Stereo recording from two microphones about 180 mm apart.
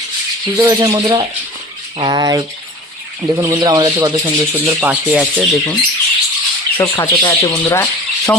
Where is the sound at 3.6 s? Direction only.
25° right (ahead or behind).